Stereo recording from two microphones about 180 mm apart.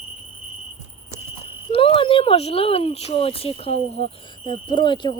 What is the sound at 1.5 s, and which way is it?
Speech, 30° left (ahead or behind).